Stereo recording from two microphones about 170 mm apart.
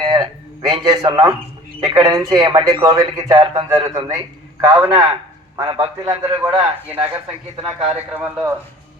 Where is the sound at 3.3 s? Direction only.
30° right (ahead or behind).